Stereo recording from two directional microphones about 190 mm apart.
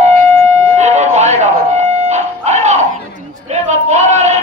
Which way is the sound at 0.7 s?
35° right (ahead or behind).